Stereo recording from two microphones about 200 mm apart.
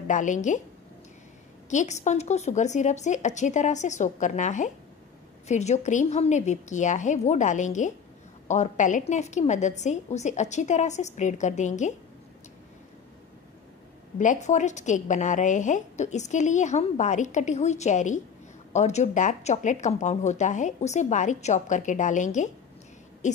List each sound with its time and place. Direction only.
0.1 s a woman's voice: 40° left (ahead or behind)
1.7 s a woman's voice: 35° left (ahead or behind)
14.1 s a woman's voice: 40° left (ahead or behind)
23.2 s hoot: 35° left (ahead or behind)